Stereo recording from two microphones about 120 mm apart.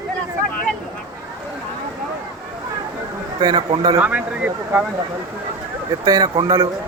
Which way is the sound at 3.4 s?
40° right (ahead or behind).